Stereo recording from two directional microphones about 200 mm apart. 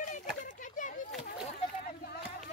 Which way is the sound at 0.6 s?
40° left (ahead or behind).